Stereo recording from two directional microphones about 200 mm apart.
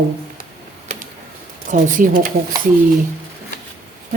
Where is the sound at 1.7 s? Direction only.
40° right (ahead or behind).